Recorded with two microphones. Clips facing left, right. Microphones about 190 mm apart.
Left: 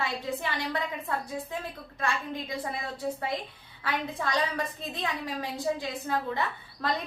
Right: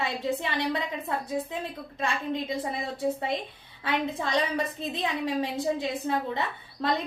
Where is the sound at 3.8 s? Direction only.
25° right (ahead or behind).